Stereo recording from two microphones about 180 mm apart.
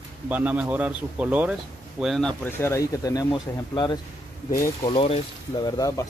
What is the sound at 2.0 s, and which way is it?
Speech, centre (ahead or behind).